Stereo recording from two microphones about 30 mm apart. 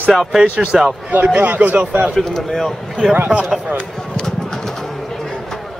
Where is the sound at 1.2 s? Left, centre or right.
Right.